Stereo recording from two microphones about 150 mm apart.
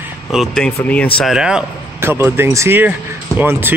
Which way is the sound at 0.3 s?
Centre (ahead or behind).